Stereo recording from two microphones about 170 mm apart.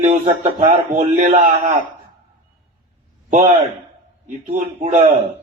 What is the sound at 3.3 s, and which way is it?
A man's voice, 45° right (ahead or behind).